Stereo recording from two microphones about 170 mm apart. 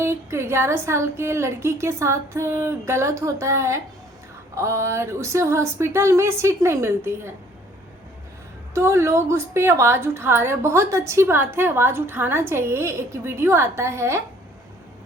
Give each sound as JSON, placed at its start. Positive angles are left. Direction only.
{"t": 0.0, "sound": "a woman's voice", "side_deg": -15}
{"t": 8.7, "sound": "a woman's voice", "side_deg": -15}